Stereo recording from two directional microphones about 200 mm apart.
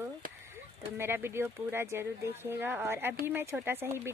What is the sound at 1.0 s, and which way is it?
Speech, 10° right (ahead or behind).